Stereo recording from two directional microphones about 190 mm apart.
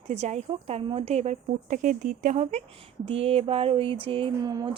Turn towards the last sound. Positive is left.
turn(degrees=-20)  # may be behind; listen again after turning